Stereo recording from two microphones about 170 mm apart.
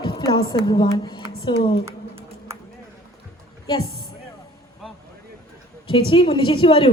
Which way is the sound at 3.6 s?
30° left (ahead or behind).